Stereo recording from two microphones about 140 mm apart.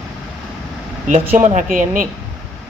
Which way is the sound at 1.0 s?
55° right (ahead or behind).